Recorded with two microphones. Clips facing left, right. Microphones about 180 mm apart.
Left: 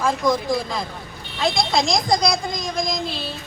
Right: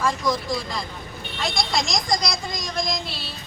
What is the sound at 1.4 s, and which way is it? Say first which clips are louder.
A woman's voice: left 5 dB; 50° left (ahead or behind).